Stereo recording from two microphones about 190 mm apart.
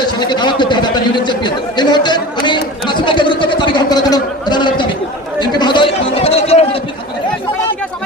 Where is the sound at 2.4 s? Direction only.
25° left (ahead or behind).